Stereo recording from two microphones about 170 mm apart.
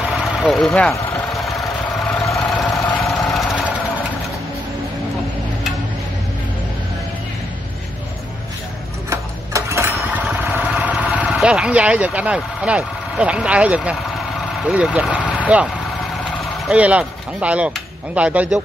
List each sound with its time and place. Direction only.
0.1 s vehicle: centre (ahead or behind)
2.3 s engine: 5° left (ahead or behind)
9.1 s a sound: 15° right (ahead or behind)
9.9 s vehicle: 5° right (ahead or behind)
14.6 s speech: 5° right (ahead or behind)